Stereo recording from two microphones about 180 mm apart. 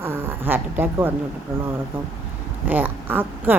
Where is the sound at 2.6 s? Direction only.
10° right (ahead or behind).